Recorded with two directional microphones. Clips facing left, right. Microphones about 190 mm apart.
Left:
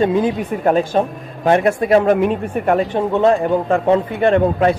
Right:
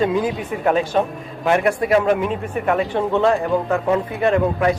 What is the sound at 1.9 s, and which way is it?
Speech, 45° left (ahead or behind).